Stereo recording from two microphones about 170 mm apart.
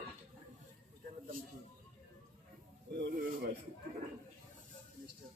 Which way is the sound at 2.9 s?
70° right (ahead or behind).